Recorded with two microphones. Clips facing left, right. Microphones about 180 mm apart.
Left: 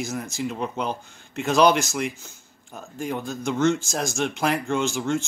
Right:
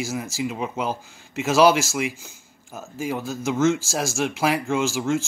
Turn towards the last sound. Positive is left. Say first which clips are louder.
# right 1 dB
turn(degrees=0)  # may be behind; listen again after turning